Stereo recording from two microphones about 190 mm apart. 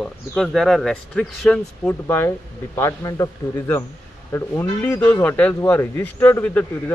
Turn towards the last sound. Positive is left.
turn(degrees=10)  # may be behind; listen again after turning